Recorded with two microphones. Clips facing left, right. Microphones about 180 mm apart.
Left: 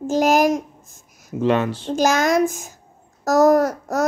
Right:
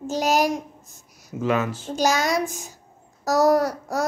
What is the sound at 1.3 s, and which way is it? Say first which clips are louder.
Speech: left 4 dB; 30° left (ahead or behind).